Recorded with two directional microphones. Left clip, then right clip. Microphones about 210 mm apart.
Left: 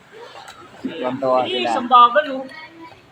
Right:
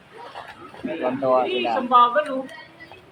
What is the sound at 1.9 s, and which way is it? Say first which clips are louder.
Speech: left 5 dB; 40° left (ahead or behind).